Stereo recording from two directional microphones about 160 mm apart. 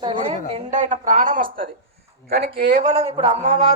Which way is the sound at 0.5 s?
50° right (ahead or behind).